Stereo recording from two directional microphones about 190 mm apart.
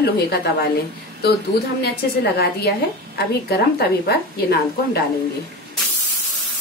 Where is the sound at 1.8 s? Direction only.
55° left (ahead or behind).